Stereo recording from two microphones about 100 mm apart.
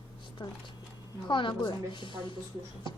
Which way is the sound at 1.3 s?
55° left (ahead or behind).